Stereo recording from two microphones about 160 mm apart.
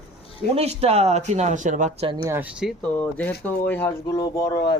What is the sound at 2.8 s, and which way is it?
Speech, 10° left (ahead or behind).